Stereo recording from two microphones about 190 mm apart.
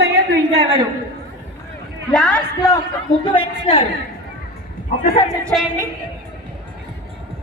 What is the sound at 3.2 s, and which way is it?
Speech, 30° left (ahead or behind).